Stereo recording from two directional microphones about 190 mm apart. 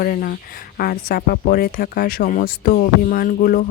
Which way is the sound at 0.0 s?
50° left (ahead or behind).